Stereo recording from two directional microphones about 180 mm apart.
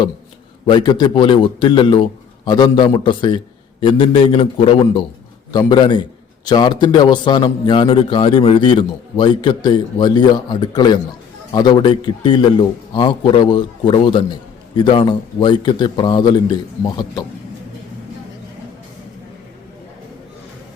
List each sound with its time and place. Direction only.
0.6 s a man's voice: 25° left (ahead or behind)